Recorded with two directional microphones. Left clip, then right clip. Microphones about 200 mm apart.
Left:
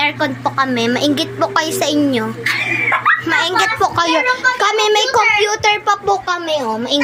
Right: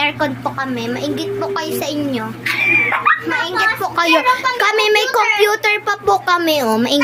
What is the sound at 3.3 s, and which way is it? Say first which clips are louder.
Speech: left 2 dB; 40° left (ahead or behind).